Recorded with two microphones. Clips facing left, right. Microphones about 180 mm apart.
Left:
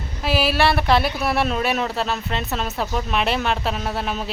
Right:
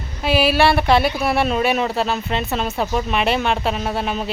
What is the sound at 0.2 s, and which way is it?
Speech, centre (ahead or behind).